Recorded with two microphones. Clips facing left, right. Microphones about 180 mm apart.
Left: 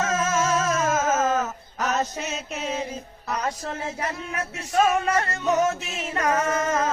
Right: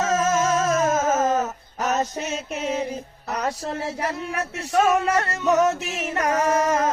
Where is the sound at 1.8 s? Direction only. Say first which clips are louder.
Right 2 dB; 40° right (ahead or behind).